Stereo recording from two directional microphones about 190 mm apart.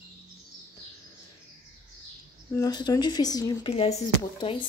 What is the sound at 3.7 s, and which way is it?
Speech, 35° left (ahead or behind).